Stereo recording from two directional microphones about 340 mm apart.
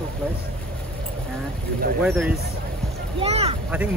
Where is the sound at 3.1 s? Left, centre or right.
Centre.